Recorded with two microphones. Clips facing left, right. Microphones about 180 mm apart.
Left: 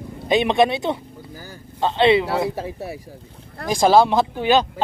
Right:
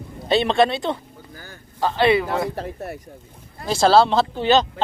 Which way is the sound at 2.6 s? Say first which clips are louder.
Left 1 dB; 5° left (ahead or behind).